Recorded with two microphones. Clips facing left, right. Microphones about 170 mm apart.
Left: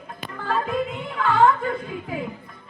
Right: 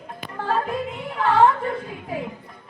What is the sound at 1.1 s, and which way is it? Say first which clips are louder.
Music: right 2 dB; 30° right (ahead or behind).